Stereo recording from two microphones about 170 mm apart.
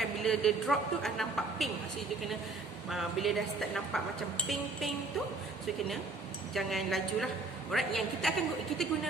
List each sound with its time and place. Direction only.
0.0 s a woman's voice: 5° left (ahead or behind)
2.9 s a woman's voice: centre (ahead or behind)
6.5 s a woman's voice: centre (ahead or behind)